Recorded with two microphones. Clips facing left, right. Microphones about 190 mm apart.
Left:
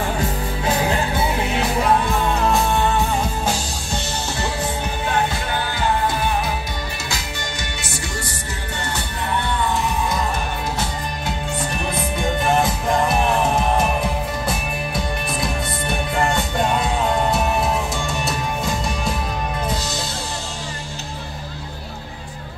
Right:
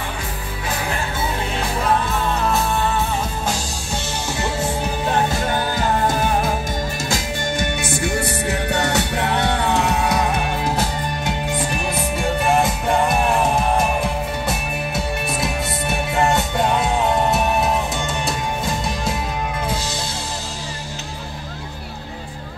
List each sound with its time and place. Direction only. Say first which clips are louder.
2.0 s music: left 2 dB; centre (ahead or behind)
5.3 s music: right 4 dB; 45° right (ahead or behind); by 10.4 s 75° right (ahead or behind)
11.5 s music: right 2 dB; 10° right (ahead or behind)
15.4 s music: right 1 dB; 5° right (ahead or behind)